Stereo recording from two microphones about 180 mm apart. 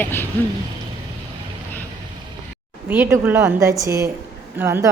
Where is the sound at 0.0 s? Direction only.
10° left (ahead or behind).